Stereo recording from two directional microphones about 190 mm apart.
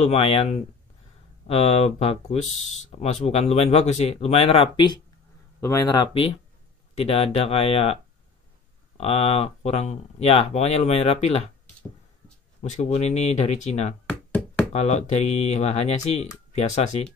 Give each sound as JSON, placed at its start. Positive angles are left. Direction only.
{"t": 0.0, "sound": "speech", "side_deg": 35}
{"t": 12.6, "sound": "speech", "side_deg": 35}
{"t": 14.0, "sound": "knock", "side_deg": 5}
{"t": 14.7, "sound": "speech", "side_deg": 35}